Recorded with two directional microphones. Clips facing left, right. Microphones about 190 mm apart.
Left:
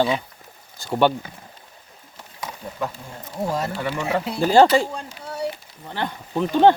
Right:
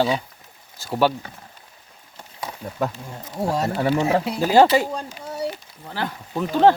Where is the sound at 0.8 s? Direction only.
5° right (ahead or behind).